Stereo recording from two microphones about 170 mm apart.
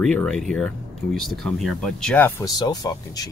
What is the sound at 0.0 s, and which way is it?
Speech, 5° left (ahead or behind).